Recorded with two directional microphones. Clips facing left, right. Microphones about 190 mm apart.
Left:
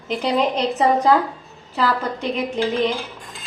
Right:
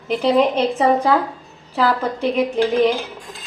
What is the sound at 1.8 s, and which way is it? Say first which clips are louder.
Speech: right 3 dB; centre (ahead or behind).